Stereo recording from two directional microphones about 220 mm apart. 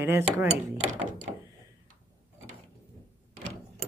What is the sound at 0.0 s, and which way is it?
Speech, 10° right (ahead or behind).